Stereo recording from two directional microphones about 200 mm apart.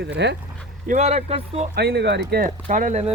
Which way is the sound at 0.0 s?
60° right (ahead or behind).